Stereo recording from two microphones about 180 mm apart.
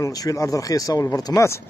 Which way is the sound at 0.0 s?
20° left (ahead or behind).